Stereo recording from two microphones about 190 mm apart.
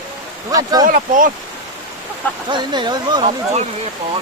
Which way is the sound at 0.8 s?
45° right (ahead or behind).